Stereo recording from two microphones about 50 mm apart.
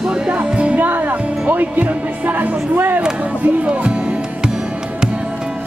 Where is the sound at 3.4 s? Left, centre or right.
Right.